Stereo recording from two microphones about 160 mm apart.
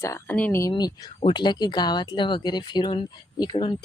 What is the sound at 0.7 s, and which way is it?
Speech, 25° left (ahead or behind).